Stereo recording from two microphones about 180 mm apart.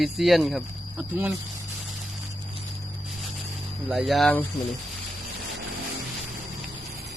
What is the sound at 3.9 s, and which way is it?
Speech, centre (ahead or behind).